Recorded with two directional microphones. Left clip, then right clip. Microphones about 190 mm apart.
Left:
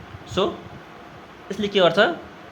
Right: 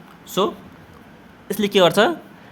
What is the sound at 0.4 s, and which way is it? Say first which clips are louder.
A man's voice: right 2 dB; 35° right (ahead or behind).